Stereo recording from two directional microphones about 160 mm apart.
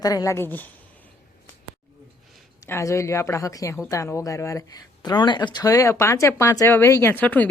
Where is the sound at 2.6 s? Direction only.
15° left (ahead or behind).